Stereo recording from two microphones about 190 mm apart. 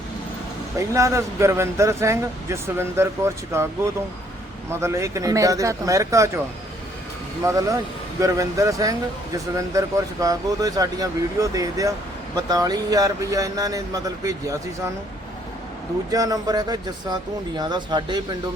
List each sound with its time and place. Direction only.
0.8 s speech: 15° right (ahead or behind)
4.7 s speech: 15° right (ahead or behind)
7.4 s speech: 15° right (ahead or behind)
16.1 s speech: 20° right (ahead or behind)